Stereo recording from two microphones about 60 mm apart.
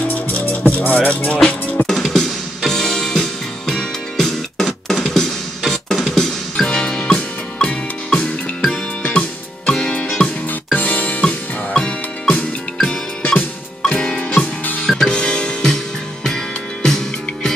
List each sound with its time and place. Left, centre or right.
0.1 s music: left
0.9 s music: left
1.9 s music: centre
9.7 s music: centre
13.2 s music: left
13.8 s music: centre
14.9 s music: centre